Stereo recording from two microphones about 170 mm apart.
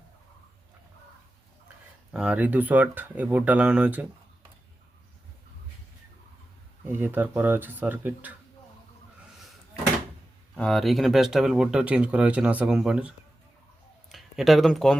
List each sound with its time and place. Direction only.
2.1 s speech: 5° right (ahead or behind)
6.8 s speech: 10° right (ahead or behind)
10.6 s speech: centre (ahead or behind)